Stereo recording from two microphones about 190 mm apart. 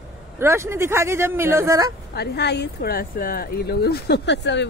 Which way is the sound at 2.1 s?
60° left (ahead or behind).